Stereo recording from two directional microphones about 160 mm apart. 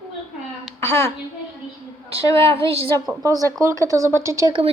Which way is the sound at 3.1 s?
20° right (ahead or behind).